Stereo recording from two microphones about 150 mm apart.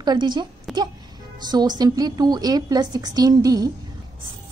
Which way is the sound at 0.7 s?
Centre (ahead or behind).